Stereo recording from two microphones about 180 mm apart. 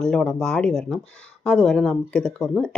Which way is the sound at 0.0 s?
5° left (ahead or behind).